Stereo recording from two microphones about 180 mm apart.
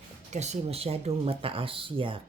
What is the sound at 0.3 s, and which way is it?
Speech, 40° right (ahead or behind).